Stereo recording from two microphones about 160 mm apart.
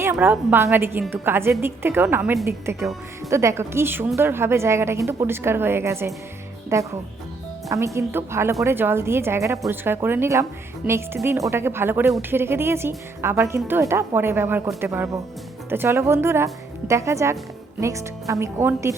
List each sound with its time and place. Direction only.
0.0 s speech: 10° right (ahead or behind)
7.9 s speech: 15° right (ahead or behind)